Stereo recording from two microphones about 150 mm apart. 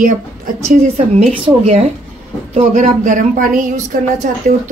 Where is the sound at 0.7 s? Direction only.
45° right (ahead or behind); by 3.7 s 65° right (ahead or behind).